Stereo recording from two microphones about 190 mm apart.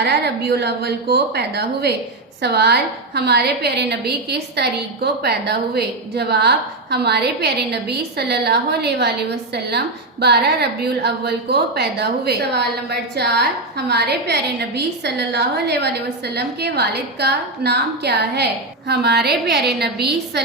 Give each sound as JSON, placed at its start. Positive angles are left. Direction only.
{"t": 0.0, "sound": "a woman's voice", "side_deg": -60}